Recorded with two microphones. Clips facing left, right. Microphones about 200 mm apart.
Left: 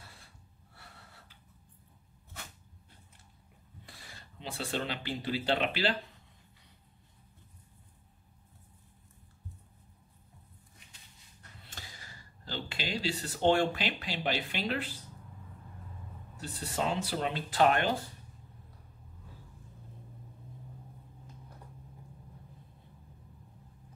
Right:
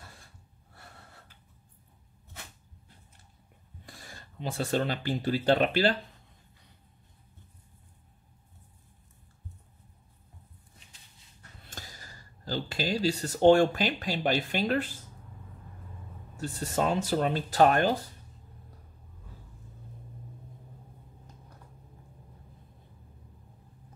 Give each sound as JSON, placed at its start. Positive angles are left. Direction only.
{"t": 3.8, "sound": "speech", "side_deg": -45}
{"t": 11.7, "sound": "speech", "side_deg": -45}
{"t": 16.3, "sound": "speech", "side_deg": -45}